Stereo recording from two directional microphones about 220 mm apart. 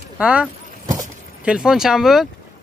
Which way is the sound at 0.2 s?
5° right (ahead or behind).